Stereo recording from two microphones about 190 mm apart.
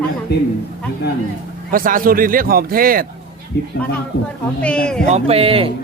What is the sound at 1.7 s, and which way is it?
A man's voice, 45° right (ahead or behind).